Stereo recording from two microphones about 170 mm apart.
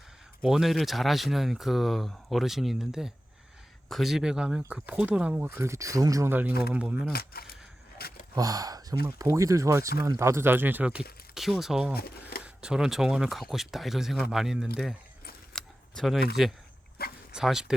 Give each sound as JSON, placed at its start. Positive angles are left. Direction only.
{"t": 0.4, "sound": "speech", "side_deg": 0}
{"t": 6.5, "sound": "speech", "side_deg": 65}
{"t": 6.7, "sound": "speech", "side_deg": -10}
{"t": 7.1, "sound": "speech", "side_deg": 65}
{"t": 7.9, "sound": "a sound", "side_deg": 65}
{"t": 8.4, "sound": "speech", "side_deg": -20}
{"t": 12.3, "sound": "a sound", "side_deg": 65}
{"t": 12.6, "sound": "speech", "side_deg": -5}
{"t": 15.5, "sound": "a sound", "side_deg": 0}
{"t": 17.0, "sound": "dog", "side_deg": 65}
{"t": 17.3, "sound": "speech", "side_deg": -5}